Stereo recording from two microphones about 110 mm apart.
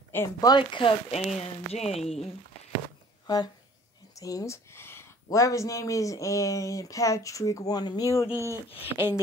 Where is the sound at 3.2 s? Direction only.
40° left (ahead or behind).